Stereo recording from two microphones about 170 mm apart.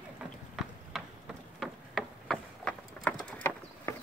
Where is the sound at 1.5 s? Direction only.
Centre (ahead or behind).